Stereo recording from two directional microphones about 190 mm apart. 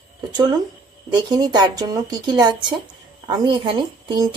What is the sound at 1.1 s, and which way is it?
Speech, 20° right (ahead or behind).